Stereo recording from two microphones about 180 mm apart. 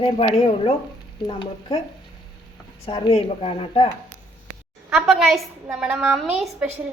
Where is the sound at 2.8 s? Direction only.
35° left (ahead or behind).